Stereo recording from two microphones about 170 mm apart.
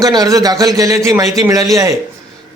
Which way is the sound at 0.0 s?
20° right (ahead or behind).